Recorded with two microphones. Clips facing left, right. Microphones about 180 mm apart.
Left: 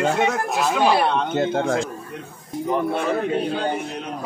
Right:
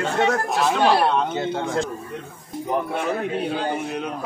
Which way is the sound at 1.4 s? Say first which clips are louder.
Left 4 dB; 50° left (ahead or behind).